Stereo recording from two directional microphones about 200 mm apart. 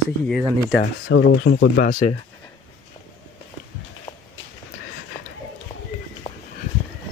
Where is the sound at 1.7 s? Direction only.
45° left (ahead or behind).